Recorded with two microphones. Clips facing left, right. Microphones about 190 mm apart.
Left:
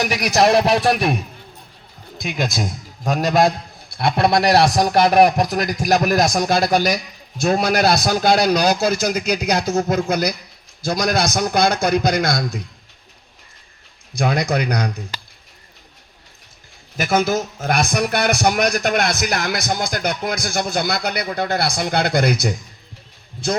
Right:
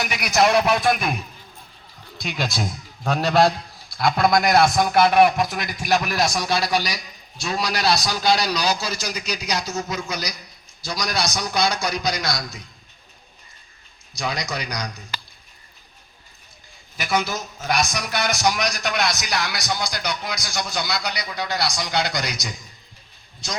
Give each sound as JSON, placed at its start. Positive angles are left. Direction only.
{"t": 0.0, "sound": "music", "side_deg": 35}
{"t": 2.2, "sound": "a man's voice", "side_deg": 15}
{"t": 3.9, "sound": "a man's voice", "side_deg": 25}
{"t": 14.2, "sound": "a man's voice", "side_deg": 55}
{"t": 17.0, "sound": "a man's voice", "side_deg": 45}